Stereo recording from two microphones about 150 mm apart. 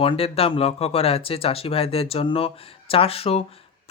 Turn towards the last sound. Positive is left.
turn(degrees=40)  # may be behind; listen again after turning